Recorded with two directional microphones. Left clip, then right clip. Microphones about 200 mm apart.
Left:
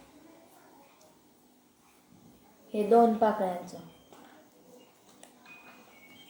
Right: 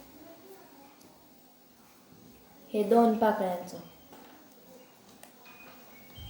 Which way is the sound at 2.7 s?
Centre (ahead or behind).